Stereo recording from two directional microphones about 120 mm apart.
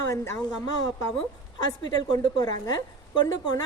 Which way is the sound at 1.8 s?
35° left (ahead or behind).